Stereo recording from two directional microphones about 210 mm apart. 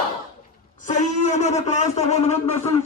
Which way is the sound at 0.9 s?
35° left (ahead or behind).